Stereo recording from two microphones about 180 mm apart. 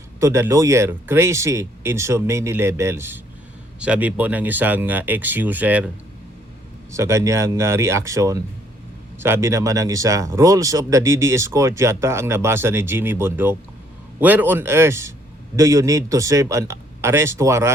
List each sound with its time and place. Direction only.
0.2 s speech: 15° right (ahead or behind)
6.9 s speech: 15° right (ahead or behind)